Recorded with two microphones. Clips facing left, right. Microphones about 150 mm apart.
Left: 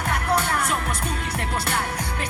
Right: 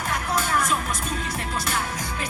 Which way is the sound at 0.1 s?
65° left (ahead or behind).